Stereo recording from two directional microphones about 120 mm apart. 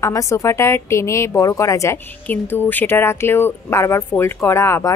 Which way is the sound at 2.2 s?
15° left (ahead or behind).